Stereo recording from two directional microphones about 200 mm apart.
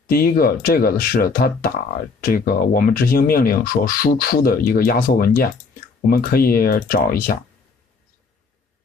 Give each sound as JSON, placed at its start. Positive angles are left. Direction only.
{"t": 0.0, "sound": "speech", "side_deg": 45}